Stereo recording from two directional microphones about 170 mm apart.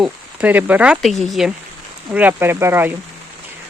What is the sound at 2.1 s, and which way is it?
Speech, 10° right (ahead or behind).